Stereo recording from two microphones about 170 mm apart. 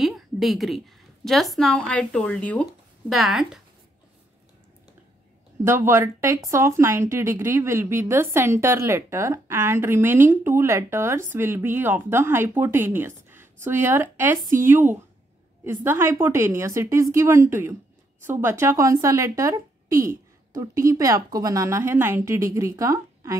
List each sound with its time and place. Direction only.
0.0 s a woman's voice: centre (ahead or behind)
5.6 s a woman's voice: 15° right (ahead or behind)